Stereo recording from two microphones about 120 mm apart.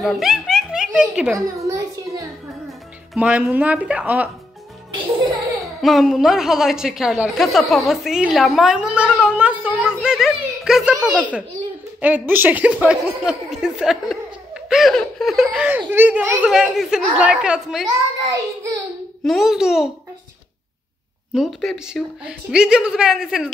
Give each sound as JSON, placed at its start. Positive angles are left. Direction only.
{"t": 0.0, "sound": "a child's voice", "side_deg": -5}
{"t": 1.6, "sound": "a sound", "side_deg": -25}
{"t": 3.2, "sound": "speech", "side_deg": -10}
{"t": 5.8, "sound": "a woman's voice", "side_deg": 0}
{"t": 10.0, "sound": "a sound", "side_deg": -5}
{"t": 12.0, "sound": "speech", "side_deg": -15}
{"t": 15.0, "sound": "laughter", "side_deg": 0}
{"t": 15.9, "sound": "speech", "side_deg": -15}
{"t": 16.4, "sound": "a woman's voice", "side_deg": -5}
{"t": 19.2, "sound": "a woman's voice", "side_deg": -5}
{"t": 21.3, "sound": "a woman's voice", "side_deg": 0}